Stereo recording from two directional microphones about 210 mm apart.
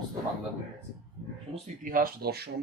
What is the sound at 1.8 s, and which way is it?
Speech, 45° right (ahead or behind).